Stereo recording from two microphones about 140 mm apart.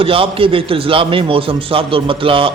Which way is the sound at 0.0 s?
40° right (ahead or behind).